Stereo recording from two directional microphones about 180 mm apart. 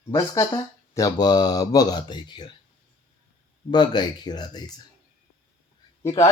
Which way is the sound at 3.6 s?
25° left (ahead or behind).